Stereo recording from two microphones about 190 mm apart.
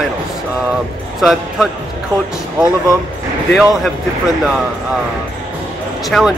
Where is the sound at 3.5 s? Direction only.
Centre (ahead or behind).